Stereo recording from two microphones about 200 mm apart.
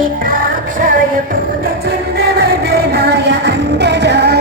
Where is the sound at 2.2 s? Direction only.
50° right (ahead or behind).